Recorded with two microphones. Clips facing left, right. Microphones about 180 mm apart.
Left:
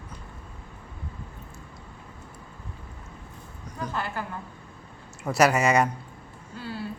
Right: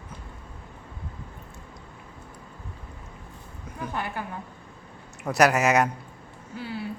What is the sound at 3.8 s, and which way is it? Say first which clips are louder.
Speech: even; 15° right (ahead or behind).